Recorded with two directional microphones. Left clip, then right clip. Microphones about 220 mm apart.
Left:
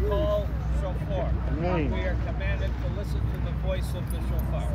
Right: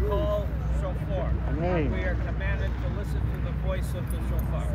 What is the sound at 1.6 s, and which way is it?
Vehicle, 45° right (ahead or behind).